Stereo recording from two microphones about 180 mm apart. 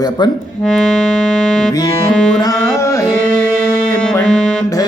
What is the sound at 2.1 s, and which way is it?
Music, 5° left (ahead or behind).